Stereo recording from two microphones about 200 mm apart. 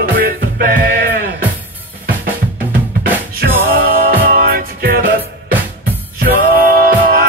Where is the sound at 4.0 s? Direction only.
45° right (ahead or behind).